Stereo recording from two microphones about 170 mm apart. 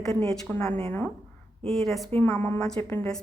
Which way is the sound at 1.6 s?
Centre (ahead or behind).